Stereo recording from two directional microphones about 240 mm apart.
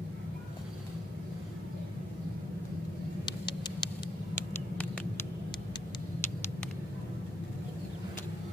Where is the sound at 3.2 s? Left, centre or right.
Centre.